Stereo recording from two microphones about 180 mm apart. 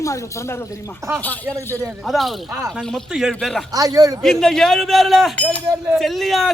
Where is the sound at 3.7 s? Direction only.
20° right (ahead or behind).